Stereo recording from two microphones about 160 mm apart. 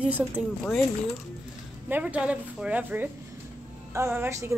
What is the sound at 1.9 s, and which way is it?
Speech, 10° right (ahead or behind).